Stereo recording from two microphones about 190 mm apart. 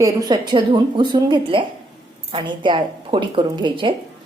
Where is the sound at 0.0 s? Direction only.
20° right (ahead or behind).